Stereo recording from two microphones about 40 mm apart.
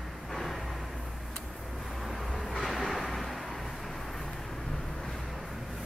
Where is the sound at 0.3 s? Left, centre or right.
Centre.